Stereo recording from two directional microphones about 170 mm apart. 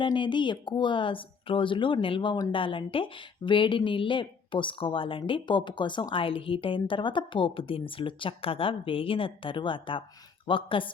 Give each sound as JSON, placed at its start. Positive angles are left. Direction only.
{"t": 0.0, "sound": "speech", "side_deg": 30}